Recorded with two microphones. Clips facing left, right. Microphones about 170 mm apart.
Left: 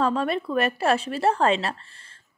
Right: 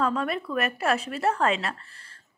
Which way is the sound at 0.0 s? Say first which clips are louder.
Left 3 dB; 30° left (ahead or behind).